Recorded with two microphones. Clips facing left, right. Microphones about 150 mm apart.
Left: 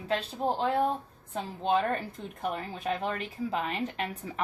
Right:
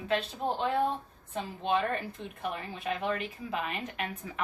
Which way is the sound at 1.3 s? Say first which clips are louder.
Left 2 dB; 40° left (ahead or behind).